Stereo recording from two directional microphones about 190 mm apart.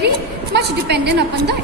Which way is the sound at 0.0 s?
60° right (ahead or behind).